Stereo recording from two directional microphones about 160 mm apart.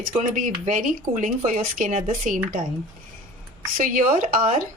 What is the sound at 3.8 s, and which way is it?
Speech, 55° right (ahead or behind).